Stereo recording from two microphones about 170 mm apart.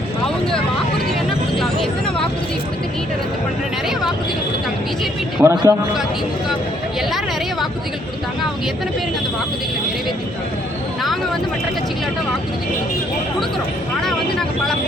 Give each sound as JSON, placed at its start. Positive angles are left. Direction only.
{"t": 5.4, "sound": "a man's voice", "side_deg": -15}
{"t": 14.0, "sound": "vehicle", "side_deg": 0}